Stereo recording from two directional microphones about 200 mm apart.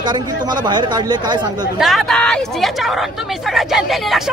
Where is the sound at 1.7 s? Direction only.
Centre (ahead or behind).